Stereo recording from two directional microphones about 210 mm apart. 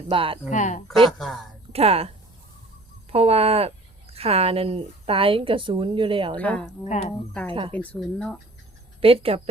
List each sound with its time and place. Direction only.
0.1 s a woman's voice: 25° right (ahead or behind)
0.5 s speech: 35° left (ahead or behind)
0.9 s speech: centre (ahead or behind)
1.7 s a woman's voice: 30° right (ahead or behind)
6.3 s speech: 5° left (ahead or behind)
6.8 s speech: 30° left (ahead or behind)
7.7 s speech: 5° left (ahead or behind)
9.0 s speech: 25° right (ahead or behind)